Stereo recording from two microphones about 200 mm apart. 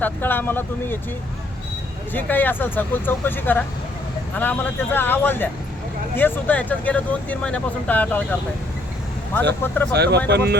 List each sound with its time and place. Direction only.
0.0 s speech: 10° left (ahead or behind)
2.1 s speech: 10° left (ahead or behind)
9.5 s speech: 10° left (ahead or behind)
9.9 s speech: 55° right (ahead or behind)